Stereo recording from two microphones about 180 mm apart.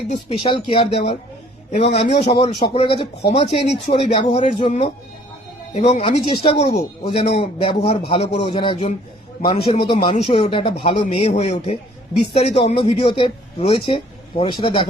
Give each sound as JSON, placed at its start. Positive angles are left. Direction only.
{"t": 0.3, "sound": "a man's voice", "side_deg": 30}